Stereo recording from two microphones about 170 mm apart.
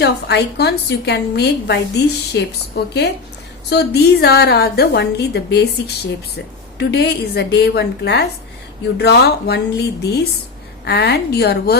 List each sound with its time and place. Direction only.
0.0 s a woman's voice: 75° left (ahead or behind)